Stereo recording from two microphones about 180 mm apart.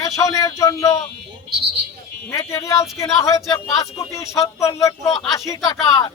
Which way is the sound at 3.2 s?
20° left (ahead or behind).